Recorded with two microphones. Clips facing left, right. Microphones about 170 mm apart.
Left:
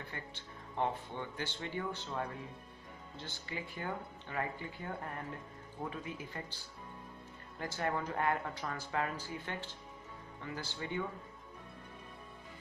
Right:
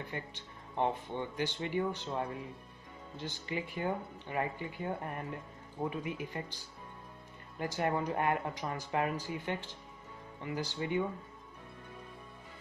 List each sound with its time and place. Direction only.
0.1 s speech: 20° right (ahead or behind)